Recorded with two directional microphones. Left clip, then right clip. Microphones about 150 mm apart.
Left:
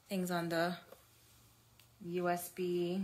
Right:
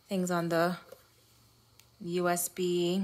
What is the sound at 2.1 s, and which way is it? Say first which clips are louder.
Speech: right 6 dB; 55° right (ahead or behind).